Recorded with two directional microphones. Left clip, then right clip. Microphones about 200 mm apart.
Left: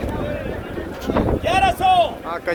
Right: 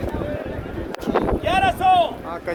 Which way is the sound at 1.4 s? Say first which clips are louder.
Left 2 dB; 10° left (ahead or behind).